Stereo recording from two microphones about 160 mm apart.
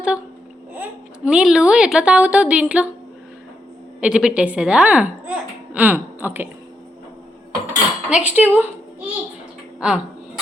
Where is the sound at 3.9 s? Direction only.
5° right (ahead or behind).